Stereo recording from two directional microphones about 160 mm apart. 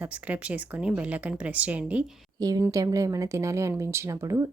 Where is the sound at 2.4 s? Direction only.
20° right (ahead or behind).